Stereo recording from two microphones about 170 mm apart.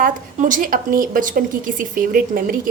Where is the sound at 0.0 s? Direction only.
50° right (ahead or behind).